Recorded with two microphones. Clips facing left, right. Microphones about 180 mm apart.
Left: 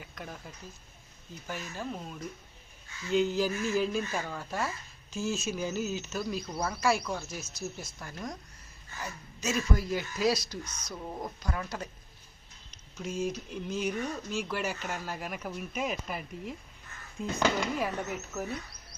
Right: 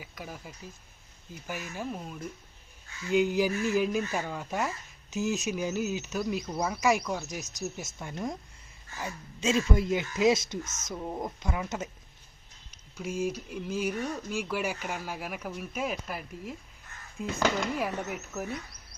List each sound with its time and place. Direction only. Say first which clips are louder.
0.0 s speech: right 1 dB; 5° right (ahead or behind); by 8.4 s 25° right (ahead or behind)
9.6 s speech: right 2 dB; 20° right (ahead or behind)
12.7 s speech: right 1 dB; 10° right (ahead or behind)